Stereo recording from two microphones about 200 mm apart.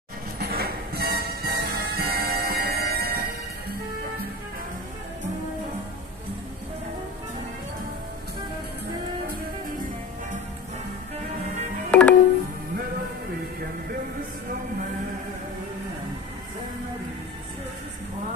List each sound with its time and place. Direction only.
0.4 s music: 50° right (ahead or behind)
11.9 s music: 5° left (ahead or behind)